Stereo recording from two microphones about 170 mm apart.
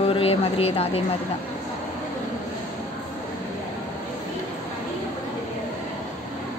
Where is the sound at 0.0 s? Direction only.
35° left (ahead or behind).